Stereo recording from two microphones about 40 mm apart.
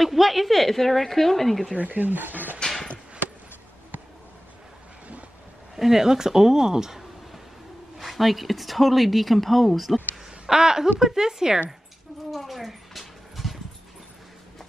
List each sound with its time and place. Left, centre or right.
0.0 s a woman's voice: centre
1.8 s speech: right
2.6 s a sound: centre
5.8 s speech: centre
8.0 s a woman's voice: centre
10.5 s speech: centre
12.3 s a sound: centre